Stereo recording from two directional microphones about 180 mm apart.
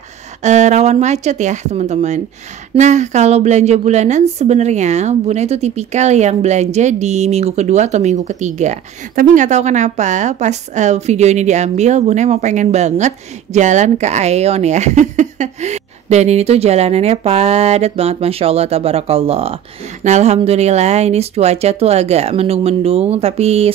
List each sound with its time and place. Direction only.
0.4 s a woman's voice: 40° right (ahead or behind)